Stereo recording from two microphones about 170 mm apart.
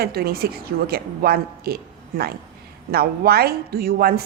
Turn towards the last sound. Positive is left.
turn(degrees=-60)  # may be behind; listen again after turning